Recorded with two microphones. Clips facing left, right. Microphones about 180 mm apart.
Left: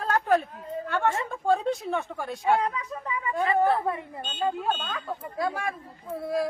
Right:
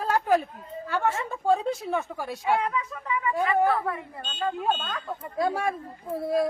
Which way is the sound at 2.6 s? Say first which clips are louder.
Even; 35° left (ahead or behind).